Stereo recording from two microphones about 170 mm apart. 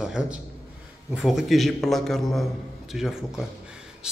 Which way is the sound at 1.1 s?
Centre (ahead or behind).